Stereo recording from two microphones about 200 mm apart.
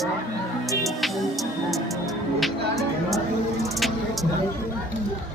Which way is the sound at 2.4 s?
Centre (ahead or behind).